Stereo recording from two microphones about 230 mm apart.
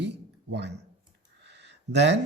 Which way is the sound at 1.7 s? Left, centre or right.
Right.